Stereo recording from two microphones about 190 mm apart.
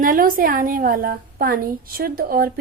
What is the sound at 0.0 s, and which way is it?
A woman's voice, 45° right (ahead or behind).